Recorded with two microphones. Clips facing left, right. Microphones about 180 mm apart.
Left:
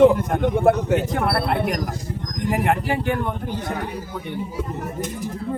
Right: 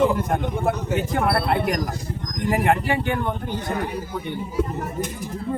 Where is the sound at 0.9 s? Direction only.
Centre (ahead or behind).